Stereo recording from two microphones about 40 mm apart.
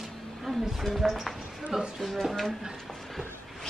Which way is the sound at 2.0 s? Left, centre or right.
Centre.